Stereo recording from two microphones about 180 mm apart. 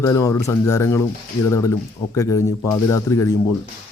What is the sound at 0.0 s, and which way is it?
Speech, 15° left (ahead or behind).